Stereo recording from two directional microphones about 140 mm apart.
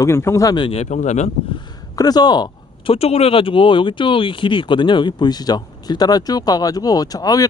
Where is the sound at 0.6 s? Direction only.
40° left (ahead or behind).